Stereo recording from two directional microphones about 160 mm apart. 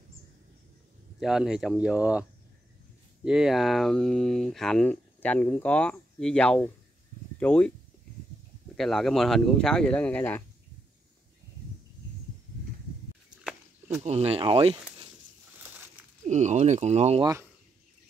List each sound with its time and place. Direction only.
1.2 s speech: 5° right (ahead or behind)
3.3 s speech: 5° right (ahead or behind)
8.7 s speech: centre (ahead or behind)
14.0 s speech: 40° right (ahead or behind)
15.5 s crushing: 10° right (ahead or behind)
16.3 s speech: 45° right (ahead or behind)
17.2 s speech: 20° right (ahead or behind)